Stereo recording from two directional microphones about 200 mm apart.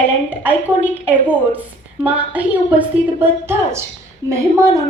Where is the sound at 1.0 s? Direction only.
10° right (ahead or behind).